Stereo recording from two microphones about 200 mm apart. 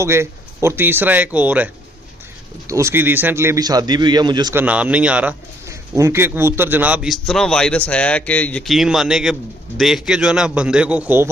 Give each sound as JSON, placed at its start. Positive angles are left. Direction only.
{"t": 0.0, "sound": "a man's voice", "side_deg": -15}
{"t": 4.6, "sound": "speech", "side_deg": -5}